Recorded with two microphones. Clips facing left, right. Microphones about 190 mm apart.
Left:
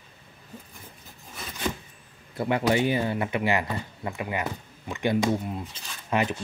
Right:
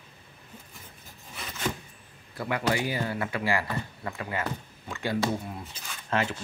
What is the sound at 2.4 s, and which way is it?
Speech, 25° left (ahead or behind).